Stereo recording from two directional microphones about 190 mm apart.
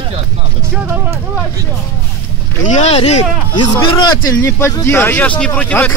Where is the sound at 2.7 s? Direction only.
35° left (ahead or behind).